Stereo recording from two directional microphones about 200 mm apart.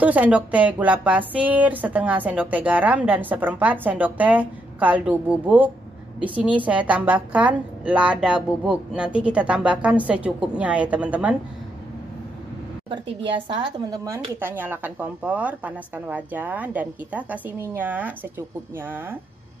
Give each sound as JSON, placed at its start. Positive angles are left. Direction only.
{"t": 0.0, "sound": "a woman's voice", "side_deg": -5}
{"t": 12.9, "sound": "speech", "side_deg": -25}